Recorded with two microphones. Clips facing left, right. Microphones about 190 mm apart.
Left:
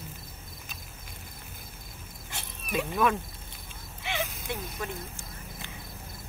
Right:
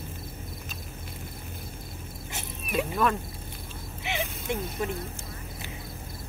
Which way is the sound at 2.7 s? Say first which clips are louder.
Right 1 dB; centre (ahead or behind).